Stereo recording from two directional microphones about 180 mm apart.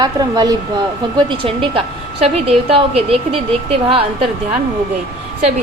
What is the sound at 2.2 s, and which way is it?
A woman's voice, 35° right (ahead or behind).